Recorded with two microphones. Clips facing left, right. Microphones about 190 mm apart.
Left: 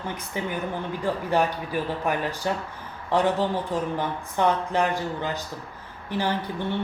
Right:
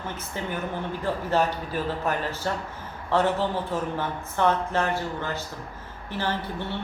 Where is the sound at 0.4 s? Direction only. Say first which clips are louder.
Left 1 dB; 15° left (ahead or behind).